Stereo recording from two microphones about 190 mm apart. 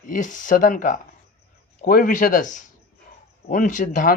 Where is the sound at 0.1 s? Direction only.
40° left (ahead or behind).